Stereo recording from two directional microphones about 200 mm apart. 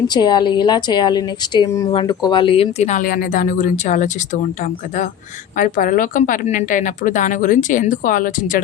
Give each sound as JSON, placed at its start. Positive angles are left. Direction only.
{"t": 0.1, "sound": "a woman's voice", "side_deg": 20}